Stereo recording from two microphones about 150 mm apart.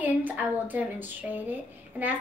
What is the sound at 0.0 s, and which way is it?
A woman's voice, 10° right (ahead or behind).